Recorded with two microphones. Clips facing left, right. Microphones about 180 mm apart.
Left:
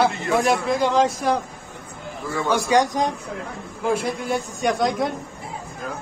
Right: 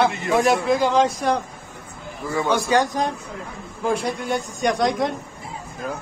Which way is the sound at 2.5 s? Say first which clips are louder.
Left 1 dB; 10° left (ahead or behind).